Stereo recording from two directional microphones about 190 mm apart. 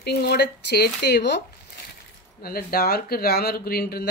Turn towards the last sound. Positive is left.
turn(degrees=55)  # may be behind; listen again after turning